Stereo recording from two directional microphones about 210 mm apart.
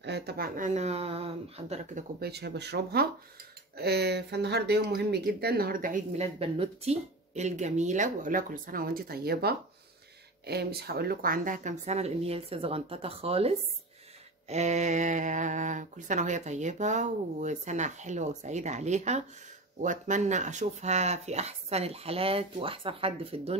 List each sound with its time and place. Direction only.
0.0 s speech: 50° right (ahead or behind); by 2.0 s 30° right (ahead or behind)
2.1 s speech: 50° right (ahead or behind); by 23.6 s 30° right (ahead or behind)